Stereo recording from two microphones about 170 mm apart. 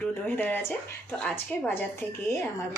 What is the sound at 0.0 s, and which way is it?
Speech, 10° left (ahead or behind).